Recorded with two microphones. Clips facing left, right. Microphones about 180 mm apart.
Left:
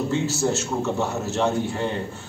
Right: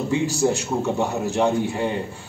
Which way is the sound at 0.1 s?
15° right (ahead or behind).